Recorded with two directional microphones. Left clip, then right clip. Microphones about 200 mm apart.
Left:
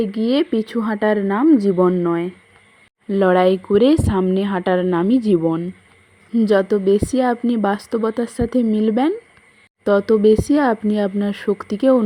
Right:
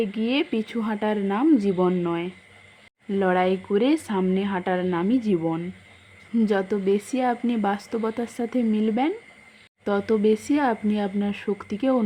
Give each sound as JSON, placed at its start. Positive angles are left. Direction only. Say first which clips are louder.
{"t": 0.0, "sound": "a woman's voice", "louder": "left 6 dB", "side_deg": 25}